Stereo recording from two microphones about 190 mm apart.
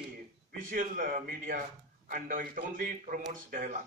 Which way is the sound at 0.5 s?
45° right (ahead or behind).